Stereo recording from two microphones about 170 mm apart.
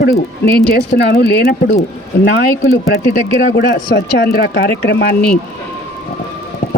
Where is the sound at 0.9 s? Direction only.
75° left (ahead or behind).